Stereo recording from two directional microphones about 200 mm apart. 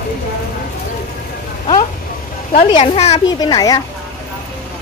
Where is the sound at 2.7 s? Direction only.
30° left (ahead or behind).